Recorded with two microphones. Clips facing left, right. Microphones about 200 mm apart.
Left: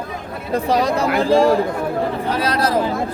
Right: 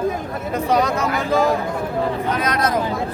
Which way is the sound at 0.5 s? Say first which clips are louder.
Left 2 dB; 35° left (ahead or behind).